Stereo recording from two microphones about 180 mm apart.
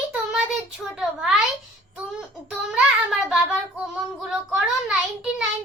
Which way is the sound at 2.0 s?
5° right (ahead or behind).